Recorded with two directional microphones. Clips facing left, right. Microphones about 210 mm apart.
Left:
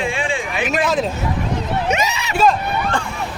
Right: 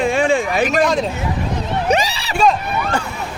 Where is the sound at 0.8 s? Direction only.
Centre (ahead or behind).